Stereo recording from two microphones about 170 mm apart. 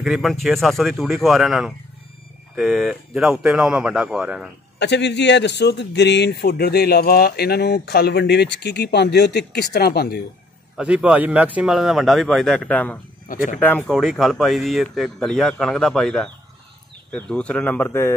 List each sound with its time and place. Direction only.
0.0 s a man's voice: 5° right (ahead or behind)
4.7 s a man's voice: 90° left; by 10.1 s 65° left (ahead or behind)
10.8 s a man's voice: 5° right (ahead or behind); by 18.1 s 10° left (ahead or behind)